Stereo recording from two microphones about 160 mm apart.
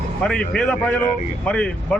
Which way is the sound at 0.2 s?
5° left (ahead or behind).